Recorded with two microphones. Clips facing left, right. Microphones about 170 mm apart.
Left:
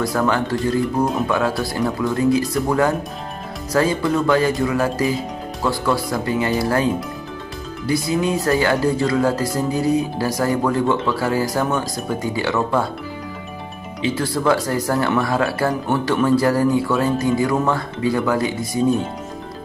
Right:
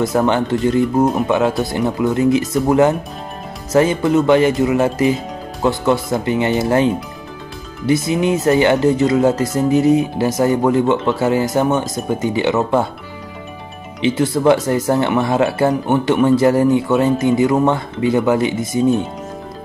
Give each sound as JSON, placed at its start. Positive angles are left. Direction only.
{"t": 0.0, "sound": "speech", "side_deg": -25}
{"t": 14.0, "sound": "speech", "side_deg": -20}